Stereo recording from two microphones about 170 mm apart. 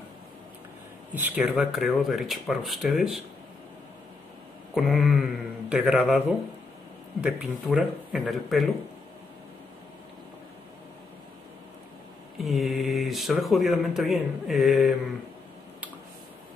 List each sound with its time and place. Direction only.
1.1 s speech: 10° right (ahead or behind)
4.7 s a sound: centre (ahead or behind)
7.2 s speech: 5° right (ahead or behind)
12.4 s speech: centre (ahead or behind)